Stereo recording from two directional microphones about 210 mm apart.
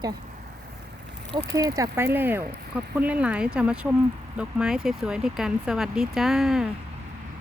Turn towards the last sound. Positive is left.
turn(degrees=0)  # may be behind; listen again after turning